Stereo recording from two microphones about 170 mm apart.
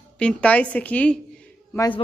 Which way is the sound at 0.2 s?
5° left (ahead or behind).